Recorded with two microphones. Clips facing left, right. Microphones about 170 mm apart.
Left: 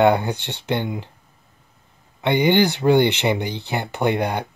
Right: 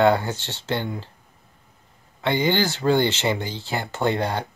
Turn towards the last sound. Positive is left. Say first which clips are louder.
# left 2 dB
turn(degrees=15)  # may be behind; listen again after turning